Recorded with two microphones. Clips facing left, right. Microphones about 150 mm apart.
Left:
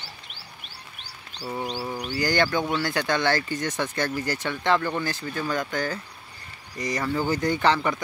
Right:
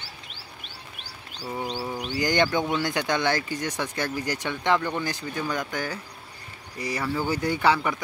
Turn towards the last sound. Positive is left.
turn(degrees=-10)  # may be behind; listen again after turning